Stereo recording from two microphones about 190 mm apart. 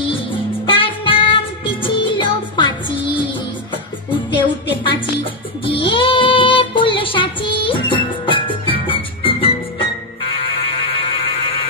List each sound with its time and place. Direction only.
0.7 s music: 25° left (ahead or behind)
4.3 s music: 25° left (ahead or behind)
10.4 s buzzer: 25° left (ahead or behind)